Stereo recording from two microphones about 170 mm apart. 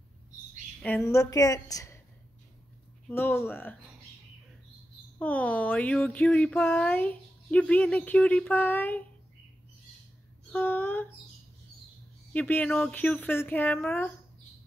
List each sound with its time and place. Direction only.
0.8 s a woman's voice: 15° left (ahead or behind)
3.1 s speech: 10° left (ahead or behind)
5.2 s speech: 10° left (ahead or behind)
10.5 s speech: 10° left (ahead or behind)
12.3 s speech: 10° left (ahead or behind)